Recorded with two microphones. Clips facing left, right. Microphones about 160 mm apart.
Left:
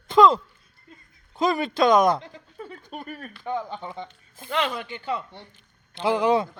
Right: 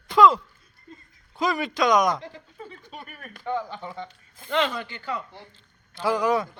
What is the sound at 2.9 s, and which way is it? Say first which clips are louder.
Speech: left 6 dB; 45° left (ahead or behind).